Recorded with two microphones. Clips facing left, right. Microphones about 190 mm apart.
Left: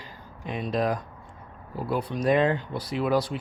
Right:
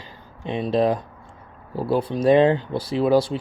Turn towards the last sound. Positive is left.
turn(degrees=-30)  # may be behind; listen again after turning